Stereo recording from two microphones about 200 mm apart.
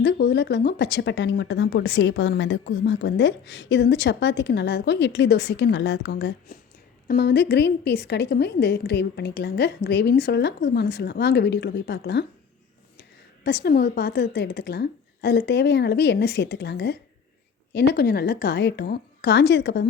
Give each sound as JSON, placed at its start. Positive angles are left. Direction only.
{"t": 0.0, "sound": "speech", "side_deg": 60}